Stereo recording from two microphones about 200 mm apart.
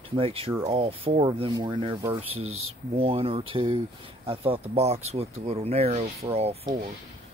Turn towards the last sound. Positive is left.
turn(degrees=-30)  # may be behind; listen again after turning